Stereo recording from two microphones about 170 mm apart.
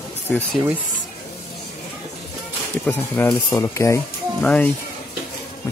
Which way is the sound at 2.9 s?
10° left (ahead or behind).